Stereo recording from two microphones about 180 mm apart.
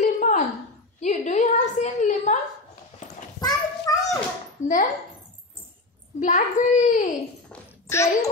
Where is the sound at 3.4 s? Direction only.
20° left (ahead or behind).